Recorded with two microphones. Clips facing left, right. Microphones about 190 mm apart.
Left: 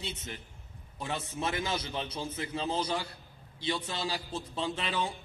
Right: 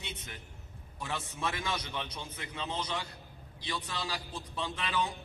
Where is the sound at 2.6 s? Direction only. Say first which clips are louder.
Left 4 dB; 40° left (ahead or behind).